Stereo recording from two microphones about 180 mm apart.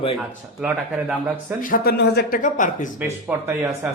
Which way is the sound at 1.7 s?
60° left (ahead or behind).